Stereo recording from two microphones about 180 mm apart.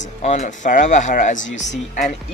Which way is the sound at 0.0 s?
40° left (ahead or behind).